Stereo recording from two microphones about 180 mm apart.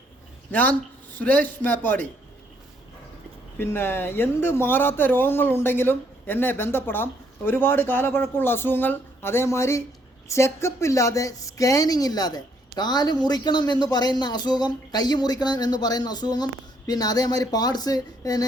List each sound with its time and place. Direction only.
0.5 s speech: 10° left (ahead or behind)
3.6 s speech: 15° left (ahead or behind)